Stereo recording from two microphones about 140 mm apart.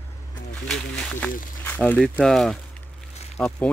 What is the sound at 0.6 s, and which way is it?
Speech, 5° left (ahead or behind).